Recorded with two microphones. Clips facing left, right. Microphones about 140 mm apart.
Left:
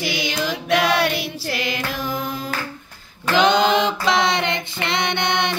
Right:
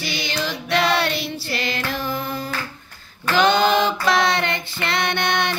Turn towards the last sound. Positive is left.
turn(degrees=20)  # may be behind; listen again after turning